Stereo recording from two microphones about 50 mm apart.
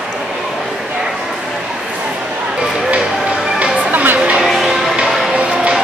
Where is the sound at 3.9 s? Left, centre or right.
Right.